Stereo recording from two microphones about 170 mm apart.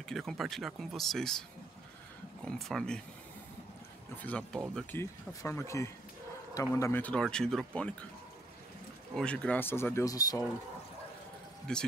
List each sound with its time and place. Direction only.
0.1 s speech: centre (ahead or behind)
2.4 s speech: 5° left (ahead or behind)
4.2 s speech: 5° left (ahead or behind)
9.1 s speech: 5° left (ahead or behind); by 10.4 s 20° left (ahead or behind)
11.7 s speech: 5° left (ahead or behind)